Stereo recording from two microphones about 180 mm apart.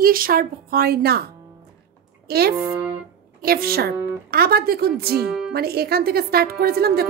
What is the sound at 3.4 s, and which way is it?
A woman's voice, 55° right (ahead or behind).